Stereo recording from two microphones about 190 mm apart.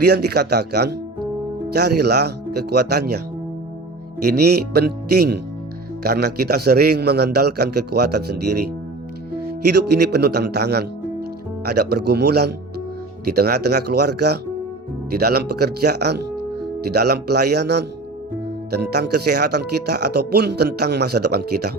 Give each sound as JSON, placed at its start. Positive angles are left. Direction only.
{"t": 0.0, "sound": "speech", "side_deg": -60}
{"t": 4.2, "sound": "speech", "side_deg": -55}
{"t": 9.7, "sound": "speech", "side_deg": -60}